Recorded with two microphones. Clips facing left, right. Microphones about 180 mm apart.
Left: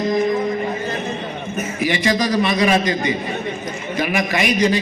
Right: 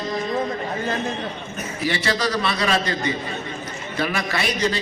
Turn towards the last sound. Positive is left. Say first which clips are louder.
# left 6 dB
turn(degrees=15)  # may be behind; listen again after turning